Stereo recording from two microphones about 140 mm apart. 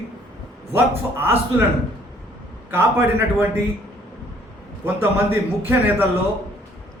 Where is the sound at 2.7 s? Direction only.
20° right (ahead or behind).